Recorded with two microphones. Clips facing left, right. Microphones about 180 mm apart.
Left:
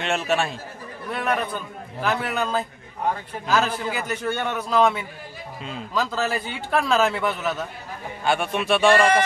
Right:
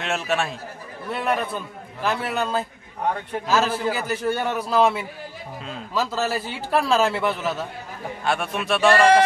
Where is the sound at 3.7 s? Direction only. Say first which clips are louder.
Right 3 dB; 35° right (ahead or behind).